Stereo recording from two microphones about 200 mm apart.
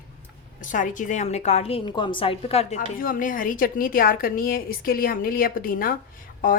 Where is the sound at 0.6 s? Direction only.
40° left (ahead or behind).